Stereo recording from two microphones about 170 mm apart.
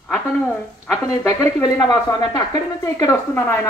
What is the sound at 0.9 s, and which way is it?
Speech, 20° left (ahead or behind).